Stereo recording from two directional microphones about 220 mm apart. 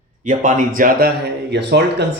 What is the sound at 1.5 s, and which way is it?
Speech, 50° right (ahead or behind).